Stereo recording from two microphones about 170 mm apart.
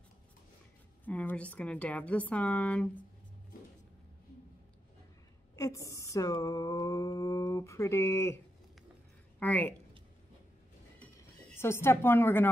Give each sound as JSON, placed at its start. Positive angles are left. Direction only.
{"t": 1.0, "sound": "a woman's voice", "side_deg": 10}
{"t": 5.6, "sound": "a sound", "side_deg": 20}
{"t": 9.4, "sound": "a woman's voice", "side_deg": 10}
{"t": 11.0, "sound": "music", "side_deg": 10}